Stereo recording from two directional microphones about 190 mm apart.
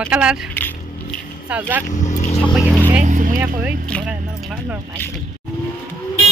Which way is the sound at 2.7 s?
10° right (ahead or behind).